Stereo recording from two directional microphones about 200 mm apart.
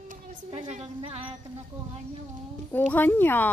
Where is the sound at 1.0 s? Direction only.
25° right (ahead or behind).